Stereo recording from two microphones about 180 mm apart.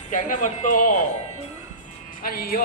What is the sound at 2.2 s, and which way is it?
Speech, 55° left (ahead or behind).